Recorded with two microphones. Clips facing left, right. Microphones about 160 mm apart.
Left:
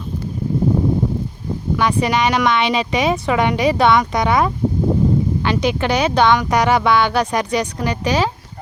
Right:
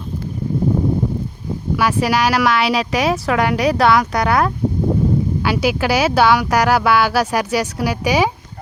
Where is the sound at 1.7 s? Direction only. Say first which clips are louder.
Even; 5° right (ahead or behind).